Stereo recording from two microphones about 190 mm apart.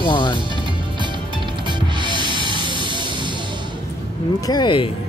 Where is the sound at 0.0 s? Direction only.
25° left (ahead or behind).